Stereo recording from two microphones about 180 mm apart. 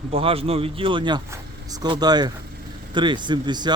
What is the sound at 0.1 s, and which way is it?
A man's voice, 30° right (ahead or behind).